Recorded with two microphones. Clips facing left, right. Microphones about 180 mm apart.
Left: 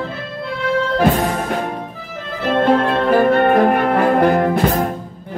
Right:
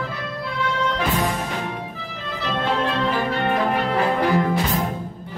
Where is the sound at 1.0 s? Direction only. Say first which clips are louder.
Left 9 dB; 50° left (ahead or behind).